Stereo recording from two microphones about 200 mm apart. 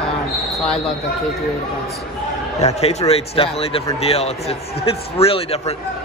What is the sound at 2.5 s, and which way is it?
A man's voice, 35° left (ahead or behind).